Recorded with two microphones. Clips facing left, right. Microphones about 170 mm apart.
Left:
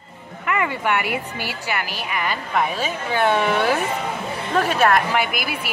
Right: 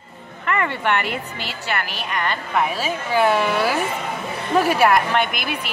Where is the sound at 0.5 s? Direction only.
10° left (ahead or behind).